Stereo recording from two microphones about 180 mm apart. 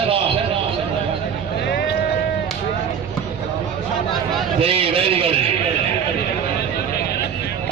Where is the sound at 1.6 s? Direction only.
65° left (ahead or behind).